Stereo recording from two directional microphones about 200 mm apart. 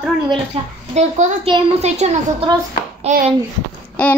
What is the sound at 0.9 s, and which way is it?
A child's voice, 35° right (ahead or behind).